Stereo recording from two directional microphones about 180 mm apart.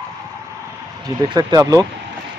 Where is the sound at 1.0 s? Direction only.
20° right (ahead or behind).